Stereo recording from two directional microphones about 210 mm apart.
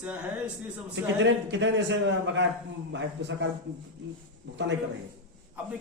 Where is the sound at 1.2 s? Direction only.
60° right (ahead or behind).